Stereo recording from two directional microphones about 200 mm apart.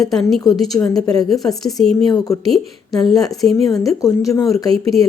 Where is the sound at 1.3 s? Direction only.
Centre (ahead or behind).